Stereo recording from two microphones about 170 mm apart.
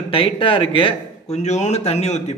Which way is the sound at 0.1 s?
30° left (ahead or behind).